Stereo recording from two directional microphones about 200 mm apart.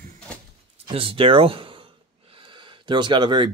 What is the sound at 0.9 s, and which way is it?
Speech, 25° right (ahead or behind).